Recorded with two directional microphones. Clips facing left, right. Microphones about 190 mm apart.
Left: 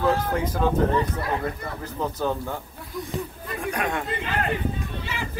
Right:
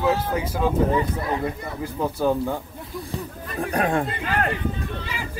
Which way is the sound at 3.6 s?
35° right (ahead or behind).